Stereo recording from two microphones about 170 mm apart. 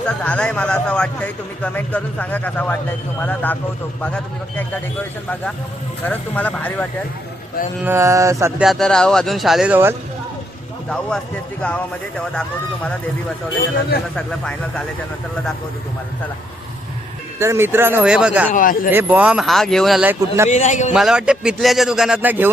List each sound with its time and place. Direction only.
0.3 s speech: 5° left (ahead or behind)
6.1 s speech: 10° left (ahead or behind)
7.9 s speech: 15° right (ahead or behind)
8.6 s speech: centre (ahead or behind)
10.8 s speech: 5° left (ahead or behind)
17.4 s speech: 15° right (ahead or behind)
18.5 s a man's voice: 55° left (ahead or behind)
18.9 s speech: 10° right (ahead or behind)
20.1 s speech: 15° right (ahead or behind)
20.5 s a man's voice: 45° left (ahead or behind)
20.9 s speech: 5° right (ahead or behind)